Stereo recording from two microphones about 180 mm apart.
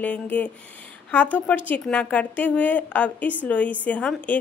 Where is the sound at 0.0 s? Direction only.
10° left (ahead or behind).